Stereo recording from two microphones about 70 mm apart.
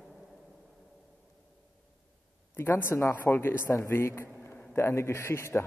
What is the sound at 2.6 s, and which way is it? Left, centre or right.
A man's voice, left.